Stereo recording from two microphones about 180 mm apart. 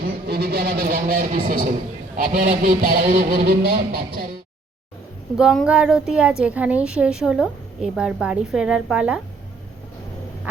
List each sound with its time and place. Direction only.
0.3 s speech: 65° right (ahead or behind)
5.4 s a woman's voice: 5° right (ahead or behind)